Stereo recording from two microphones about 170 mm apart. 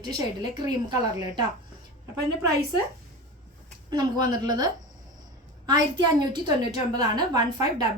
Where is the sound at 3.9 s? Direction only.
25° right (ahead or behind).